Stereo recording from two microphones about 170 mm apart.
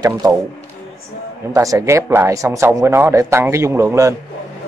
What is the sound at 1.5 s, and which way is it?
A man's voice, 20° right (ahead or behind).